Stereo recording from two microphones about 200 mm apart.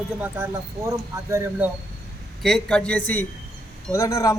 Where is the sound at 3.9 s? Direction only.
15° left (ahead or behind).